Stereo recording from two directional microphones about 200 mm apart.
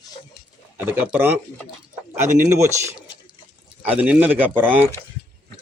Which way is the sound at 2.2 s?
40° right (ahead or behind).